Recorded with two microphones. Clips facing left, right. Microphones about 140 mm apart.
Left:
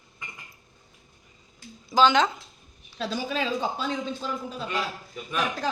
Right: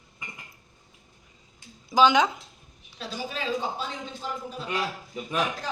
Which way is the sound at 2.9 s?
90° left.